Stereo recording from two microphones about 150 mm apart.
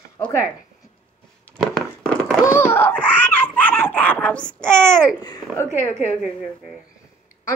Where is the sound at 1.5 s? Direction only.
5° left (ahead or behind).